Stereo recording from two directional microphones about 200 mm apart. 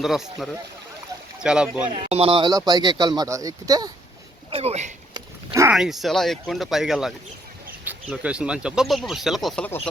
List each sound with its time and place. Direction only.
0.0 s speech: centre (ahead or behind)
1.9 s speech: 30° right (ahead or behind)
4.5 s speech: 30° right (ahead or behind)
5.1 s a sound: 15° right (ahead or behind)
5.7 s speech: centre (ahead or behind)